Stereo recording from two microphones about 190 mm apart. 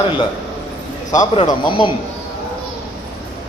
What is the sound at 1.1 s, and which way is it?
Speech, 20° left (ahead or behind).